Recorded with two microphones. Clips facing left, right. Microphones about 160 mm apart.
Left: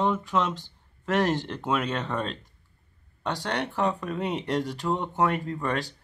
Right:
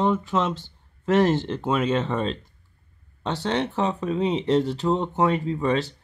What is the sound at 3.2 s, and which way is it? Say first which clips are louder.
Speech: right 4 dB; 25° right (ahead or behind).